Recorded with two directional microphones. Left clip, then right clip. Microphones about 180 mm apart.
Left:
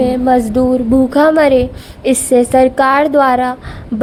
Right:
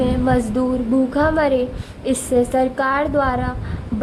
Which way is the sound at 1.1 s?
40° left (ahead or behind).